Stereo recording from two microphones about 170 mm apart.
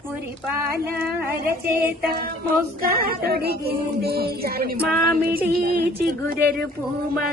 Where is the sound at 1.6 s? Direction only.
65° right (ahead or behind).